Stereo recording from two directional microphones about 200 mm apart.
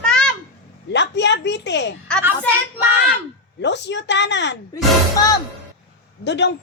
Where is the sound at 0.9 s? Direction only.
60° left (ahead or behind).